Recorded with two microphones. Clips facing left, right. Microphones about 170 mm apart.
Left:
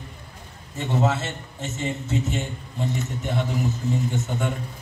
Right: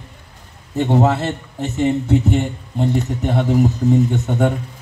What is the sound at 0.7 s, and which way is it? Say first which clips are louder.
A man's voice: right 8 dB; 65° right (ahead or behind).